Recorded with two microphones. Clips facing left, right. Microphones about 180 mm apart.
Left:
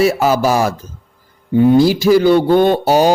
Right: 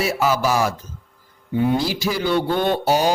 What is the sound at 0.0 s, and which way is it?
Speech, 45° left (ahead or behind).